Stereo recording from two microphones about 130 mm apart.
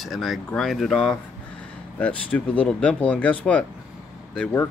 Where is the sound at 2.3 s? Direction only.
5° left (ahead or behind).